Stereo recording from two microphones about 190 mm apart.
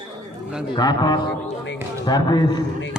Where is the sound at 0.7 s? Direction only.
20° left (ahead or behind).